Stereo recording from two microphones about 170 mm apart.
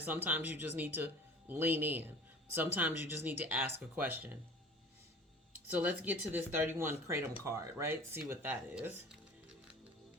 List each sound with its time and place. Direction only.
0.0 s speech: 10° right (ahead or behind)
5.7 s speech: 10° right (ahead or behind)